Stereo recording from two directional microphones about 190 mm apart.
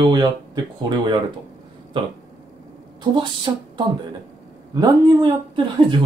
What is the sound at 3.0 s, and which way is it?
Speech, 25° right (ahead or behind).